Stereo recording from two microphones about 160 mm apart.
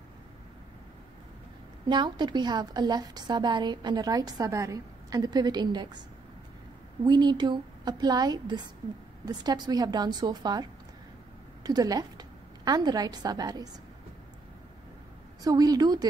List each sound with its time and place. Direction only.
1.9 s a woman's voice: 30° right (ahead or behind)
7.1 s a woman's voice: 30° right (ahead or behind)
15.4 s a woman's voice: 25° right (ahead or behind)